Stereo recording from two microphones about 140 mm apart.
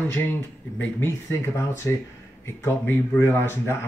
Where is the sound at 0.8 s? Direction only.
20° left (ahead or behind).